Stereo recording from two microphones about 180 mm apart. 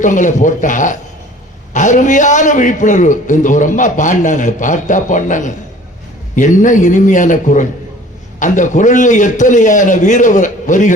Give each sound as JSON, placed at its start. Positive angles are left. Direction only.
{"t": 0.0, "sound": "a man's voice", "side_deg": 45}